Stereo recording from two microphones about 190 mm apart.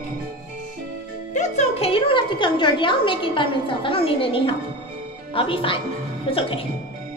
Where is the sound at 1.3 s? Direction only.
35° left (ahead or behind).